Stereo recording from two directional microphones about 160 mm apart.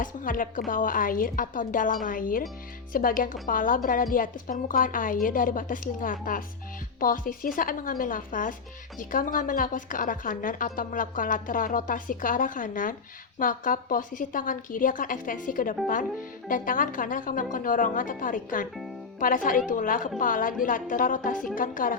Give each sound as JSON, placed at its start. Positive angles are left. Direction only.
{"t": 0.0, "sound": "a woman's voice", "side_deg": 55}